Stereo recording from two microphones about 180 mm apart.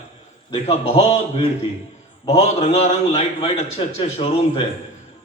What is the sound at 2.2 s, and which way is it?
A man's voice, 40° left (ahead or behind).